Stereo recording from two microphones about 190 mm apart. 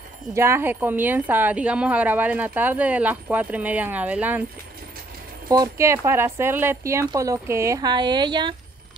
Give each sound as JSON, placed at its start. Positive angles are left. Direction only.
{"t": 0.3, "sound": "a woman's voice", "side_deg": -15}
{"t": 5.5, "sound": "a woman's voice", "side_deg": -15}